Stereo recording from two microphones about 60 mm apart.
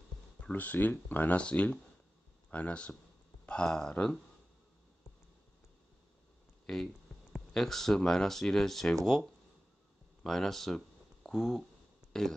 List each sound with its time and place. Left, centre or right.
0.4 s speech: left
6.6 s speech: centre
11.2 s a sound: centre
12.1 s speech: centre